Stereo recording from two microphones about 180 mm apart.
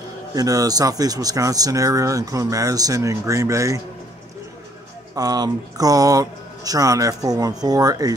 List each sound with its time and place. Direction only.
0.3 s speech: 20° right (ahead or behind)
5.1 s speech: 20° right (ahead or behind)